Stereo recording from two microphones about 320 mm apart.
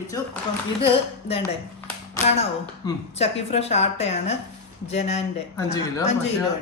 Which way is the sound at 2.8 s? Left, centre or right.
Centre.